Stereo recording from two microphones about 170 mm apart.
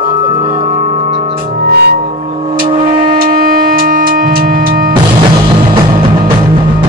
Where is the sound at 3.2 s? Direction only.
60° right (ahead or behind).